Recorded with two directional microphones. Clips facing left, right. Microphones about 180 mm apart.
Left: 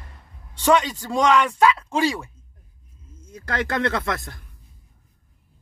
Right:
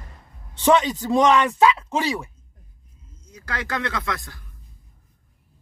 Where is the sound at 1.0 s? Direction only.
15° right (ahead or behind).